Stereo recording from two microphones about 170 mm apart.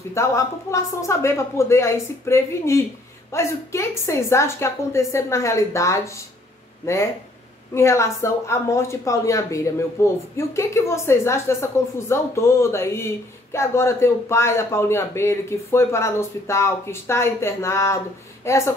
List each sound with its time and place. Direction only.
0.1 s a woman's voice: 15° left (ahead or behind)
7.7 s a woman's voice: 15° left (ahead or behind)